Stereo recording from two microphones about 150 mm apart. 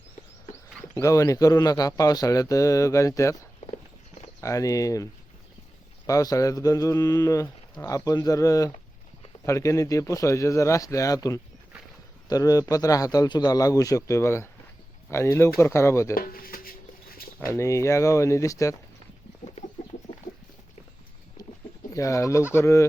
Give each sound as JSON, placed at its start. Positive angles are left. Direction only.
{"t": 0.9, "sound": "speech", "side_deg": 20}
{"t": 4.4, "sound": "speech", "side_deg": 20}
{"t": 6.1, "sound": "speech", "side_deg": 25}
{"t": 16.1, "sound": "speech", "side_deg": 75}
{"t": 17.4, "sound": "speech", "side_deg": 20}
{"t": 21.9, "sound": "speech", "side_deg": 20}